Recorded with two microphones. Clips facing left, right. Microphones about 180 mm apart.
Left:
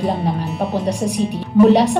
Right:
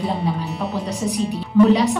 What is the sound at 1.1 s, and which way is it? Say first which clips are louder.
Speech: left 2 dB; 15° left (ahead or behind).